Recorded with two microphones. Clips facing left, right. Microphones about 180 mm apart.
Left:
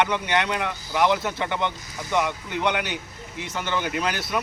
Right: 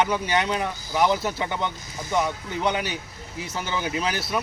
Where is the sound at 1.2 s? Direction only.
5° right (ahead or behind).